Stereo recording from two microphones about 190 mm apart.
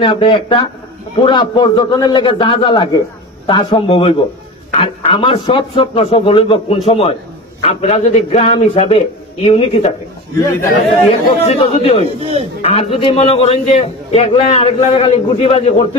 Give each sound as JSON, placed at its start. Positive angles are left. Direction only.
{"t": 0.0, "sound": "a man's voice", "side_deg": 25}
{"t": 11.2, "sound": "a man's voice", "side_deg": 30}